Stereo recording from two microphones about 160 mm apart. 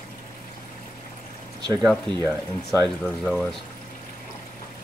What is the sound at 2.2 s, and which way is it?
Speech, 20° right (ahead or behind).